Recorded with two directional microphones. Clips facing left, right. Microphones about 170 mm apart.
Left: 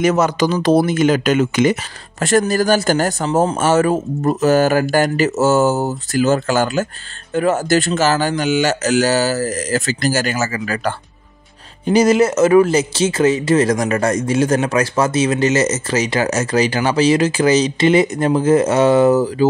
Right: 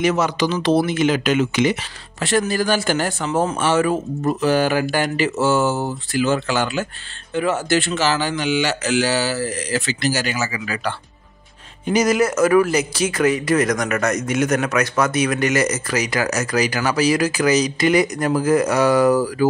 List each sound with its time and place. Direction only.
0.0 s speech: 45° left (ahead or behind)
11.8 s speech: 30° left (ahead or behind)